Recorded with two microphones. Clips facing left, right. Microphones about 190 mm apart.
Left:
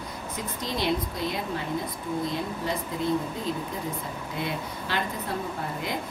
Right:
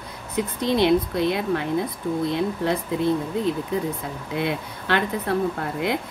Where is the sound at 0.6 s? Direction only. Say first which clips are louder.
Right 9 dB; 65° right (ahead or behind).